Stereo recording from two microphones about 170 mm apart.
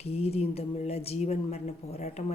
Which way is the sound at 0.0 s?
35° left (ahead or behind).